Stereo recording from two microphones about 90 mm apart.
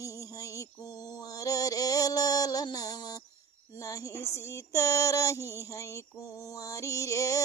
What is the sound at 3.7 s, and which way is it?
Female singing, 40° left (ahead or behind).